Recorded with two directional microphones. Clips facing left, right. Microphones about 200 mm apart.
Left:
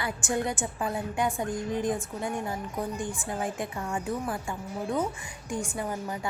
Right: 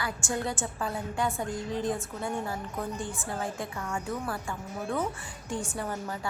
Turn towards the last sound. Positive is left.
turn(degrees=15)  # may be behind; listen again after turning